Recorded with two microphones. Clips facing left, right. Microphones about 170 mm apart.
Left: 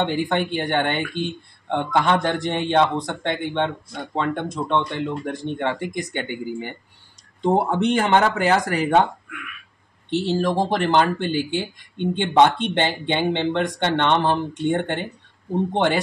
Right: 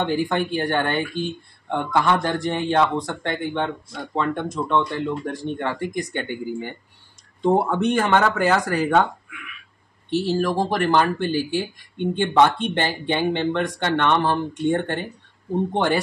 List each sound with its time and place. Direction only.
0.0 s speech: 20° left (ahead or behind)
10.0 s speech: 20° left (ahead or behind)